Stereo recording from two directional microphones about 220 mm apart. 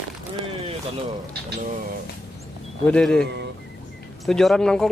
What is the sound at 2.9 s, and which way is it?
Speech, 5° left (ahead or behind).